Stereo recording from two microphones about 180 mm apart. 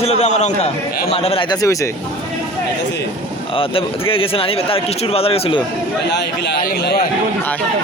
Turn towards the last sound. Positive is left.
turn(degrees=60)  # may be behind; listen again after turning